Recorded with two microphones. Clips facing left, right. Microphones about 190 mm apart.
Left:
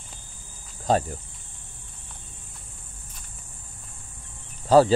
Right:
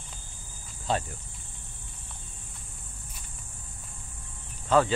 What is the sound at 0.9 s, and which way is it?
Speech, 40° left (ahead or behind).